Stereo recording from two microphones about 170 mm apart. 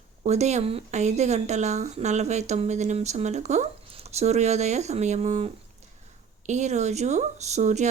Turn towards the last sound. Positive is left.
turn(degrees=-45)  # may be behind; listen again after turning